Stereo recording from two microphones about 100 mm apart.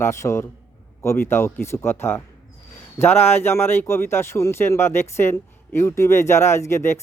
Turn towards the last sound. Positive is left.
turn(degrees=25)  # may be behind; listen again after turning